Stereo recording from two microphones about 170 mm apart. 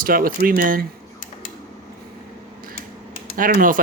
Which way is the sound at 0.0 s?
55° right (ahead or behind).